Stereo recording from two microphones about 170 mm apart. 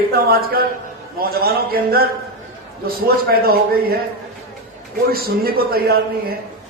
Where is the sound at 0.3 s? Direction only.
60° right (ahead or behind).